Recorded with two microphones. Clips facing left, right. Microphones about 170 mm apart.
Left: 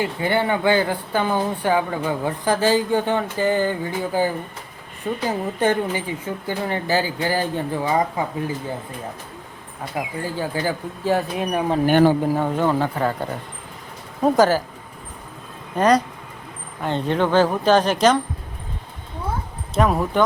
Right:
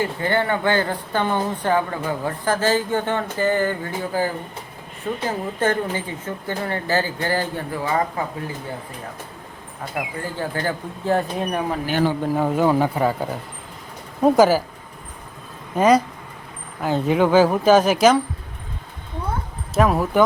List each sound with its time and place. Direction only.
0.0 s speech: 15° left (ahead or behind)
10.3 s speech: 10° left (ahead or behind)
11.9 s speech: 55° left (ahead or behind)
12.2 s speech: centre (ahead or behind)
15.7 s speech: 5° right (ahead or behind)
19.7 s speech: centre (ahead or behind)